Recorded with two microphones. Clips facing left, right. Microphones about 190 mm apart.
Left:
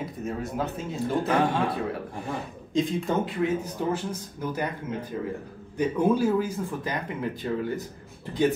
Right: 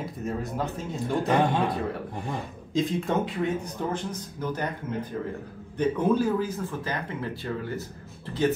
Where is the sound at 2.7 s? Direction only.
Centre (ahead or behind).